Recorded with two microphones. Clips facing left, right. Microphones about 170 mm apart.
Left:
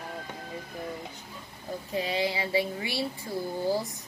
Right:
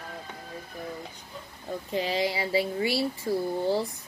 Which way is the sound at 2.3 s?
30° right (ahead or behind).